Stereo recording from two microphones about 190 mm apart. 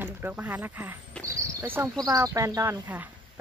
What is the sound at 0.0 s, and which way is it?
Speech, 10° right (ahead or behind).